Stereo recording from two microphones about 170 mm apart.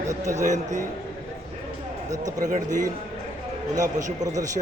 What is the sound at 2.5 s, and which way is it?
Speech, 50° right (ahead or behind).